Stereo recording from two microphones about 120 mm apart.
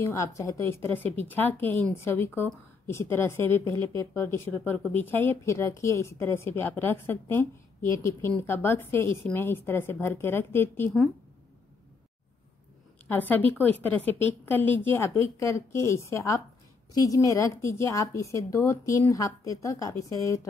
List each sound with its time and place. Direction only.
0.0 s a woman's voice: 25° left (ahead or behind)
13.1 s a woman's voice: 15° left (ahead or behind)